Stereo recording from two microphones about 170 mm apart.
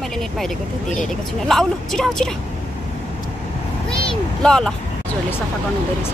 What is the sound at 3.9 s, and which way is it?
Vehicle, 5° left (ahead or behind).